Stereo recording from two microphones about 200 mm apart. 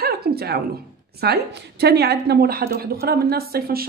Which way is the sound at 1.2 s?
55° right (ahead or behind).